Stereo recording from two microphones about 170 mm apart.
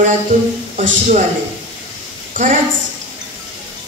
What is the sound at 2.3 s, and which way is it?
Speech, 50° right (ahead or behind).